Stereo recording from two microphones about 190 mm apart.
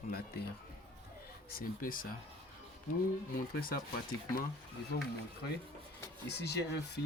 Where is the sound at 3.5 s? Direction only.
50° left (ahead or behind).